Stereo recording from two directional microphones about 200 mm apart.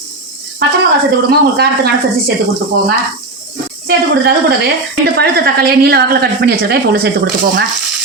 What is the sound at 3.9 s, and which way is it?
Speech, 55° right (ahead or behind).